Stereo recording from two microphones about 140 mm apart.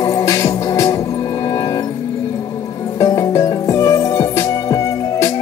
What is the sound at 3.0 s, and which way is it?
Music, 25° left (ahead or behind).